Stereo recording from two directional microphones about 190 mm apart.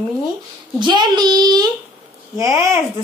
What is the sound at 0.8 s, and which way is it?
Speech, 25° right (ahead or behind).